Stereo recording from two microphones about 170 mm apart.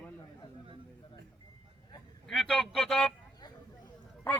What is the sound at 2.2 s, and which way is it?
Speech, 5° left (ahead or behind).